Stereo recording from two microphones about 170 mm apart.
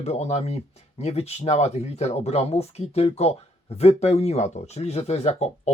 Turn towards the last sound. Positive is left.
turn(degrees=40)  # may be behind; listen again after turning